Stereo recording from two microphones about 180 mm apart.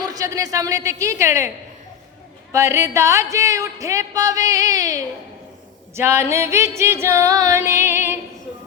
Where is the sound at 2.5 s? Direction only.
15° right (ahead or behind).